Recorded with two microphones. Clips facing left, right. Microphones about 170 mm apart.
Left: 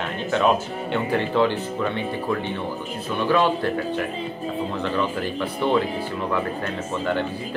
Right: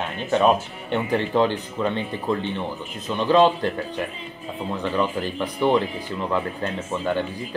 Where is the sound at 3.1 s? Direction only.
20° right (ahead or behind).